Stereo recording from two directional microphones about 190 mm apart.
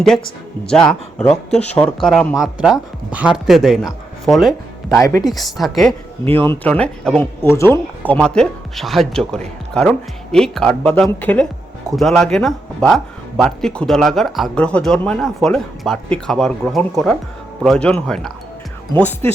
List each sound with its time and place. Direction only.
1.5 s speech: 5° left (ahead or behind)
4.9 s speech: 15° left (ahead or behind)
5.2 s speech: centre (ahead or behind)
6.3 s speech: 10° left (ahead or behind)
18.9 s speech: 10° left (ahead or behind)